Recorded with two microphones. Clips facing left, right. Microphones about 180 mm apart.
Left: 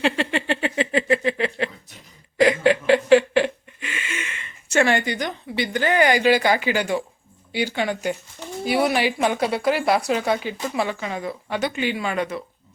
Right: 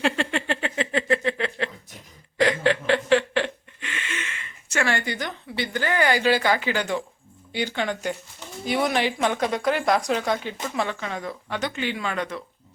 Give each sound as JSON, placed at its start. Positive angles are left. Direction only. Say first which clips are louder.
{"t": 0.0, "sound": "a sound", "louder": "left 2 dB", "side_deg": 0}
{"t": 2.4, "sound": "chuckle", "louder": "left 4 dB", "side_deg": 10}
{"t": 4.7, "sound": "a woman's voice", "louder": "left 6 dB", "side_deg": 20}